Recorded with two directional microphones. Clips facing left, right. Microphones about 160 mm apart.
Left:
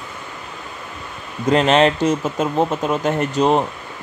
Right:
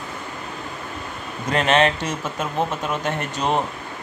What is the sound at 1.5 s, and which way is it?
Speech, 35° left (ahead or behind).